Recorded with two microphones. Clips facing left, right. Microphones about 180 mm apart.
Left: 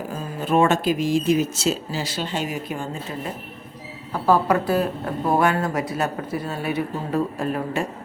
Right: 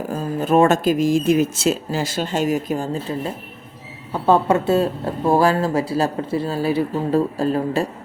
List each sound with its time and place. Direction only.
0.1 s speech: 45° right (ahead or behind)
4.1 s speech: 25° right (ahead or behind)